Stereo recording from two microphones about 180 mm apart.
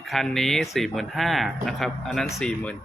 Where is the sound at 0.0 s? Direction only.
Centre (ahead or behind).